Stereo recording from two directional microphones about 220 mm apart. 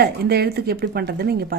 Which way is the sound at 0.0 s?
45° right (ahead or behind).